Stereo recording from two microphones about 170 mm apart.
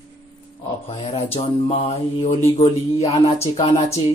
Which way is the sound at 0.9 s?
35° left (ahead or behind).